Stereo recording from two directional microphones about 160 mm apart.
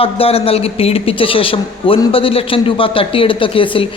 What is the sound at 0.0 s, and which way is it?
A man's voice, 35° left (ahead or behind).